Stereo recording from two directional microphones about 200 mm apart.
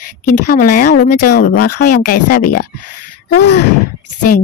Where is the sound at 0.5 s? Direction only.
45° left (ahead or behind).